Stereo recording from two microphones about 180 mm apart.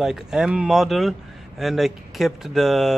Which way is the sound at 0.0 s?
5° right (ahead or behind).